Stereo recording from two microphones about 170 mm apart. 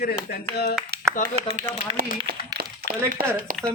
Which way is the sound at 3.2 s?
65° right (ahead or behind).